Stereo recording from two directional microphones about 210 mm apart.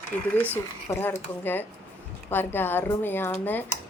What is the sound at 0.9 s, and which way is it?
Speech, 10° left (ahead or behind).